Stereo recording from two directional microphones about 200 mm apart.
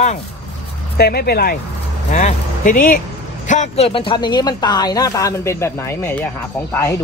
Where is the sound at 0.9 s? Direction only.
50° left (ahead or behind).